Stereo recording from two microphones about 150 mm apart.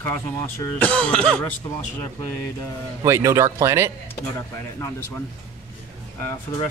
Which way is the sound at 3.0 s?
20° right (ahead or behind).